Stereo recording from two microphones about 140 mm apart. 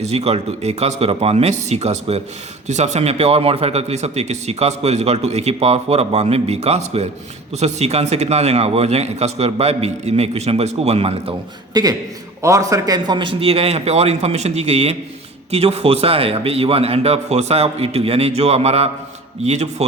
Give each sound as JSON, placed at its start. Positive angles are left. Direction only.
{"t": 0.0, "sound": "a man's voice", "side_deg": -50}
{"t": 11.7, "sound": "a man's voice", "side_deg": -25}